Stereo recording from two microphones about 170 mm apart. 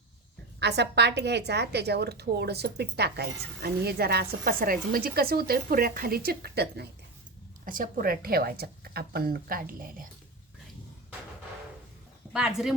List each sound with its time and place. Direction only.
0.6 s a woman's voice: 85° right
7.6 s a woman's voice: 55° right (ahead or behind)
12.3 s speech: 5° right (ahead or behind)